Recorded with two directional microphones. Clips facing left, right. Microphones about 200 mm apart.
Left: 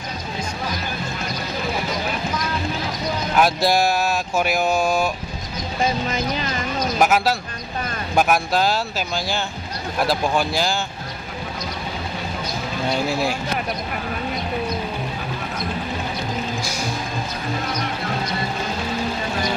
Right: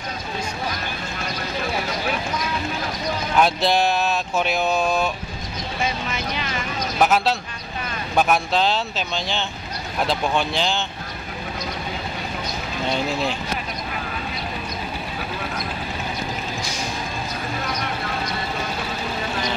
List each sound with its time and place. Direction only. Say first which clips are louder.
3.3 s speech: left 1 dB; 10° left (ahead or behind)
5.8 s speech: left 5 dB; 40° left (ahead or behind)
7.0 s speech: even; 10° left (ahead or behind)